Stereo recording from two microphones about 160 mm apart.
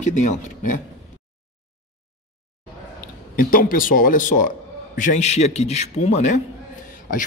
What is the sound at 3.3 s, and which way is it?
A man's voice, 60° left (ahead or behind).